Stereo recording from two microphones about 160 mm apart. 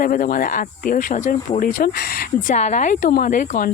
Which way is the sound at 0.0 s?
60° left (ahead or behind).